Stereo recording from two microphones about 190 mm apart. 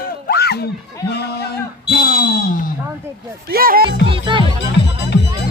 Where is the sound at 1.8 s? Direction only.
55° left (ahead or behind).